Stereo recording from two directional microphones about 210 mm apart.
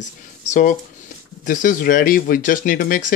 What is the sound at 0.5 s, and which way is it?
Speech, 35° left (ahead or behind).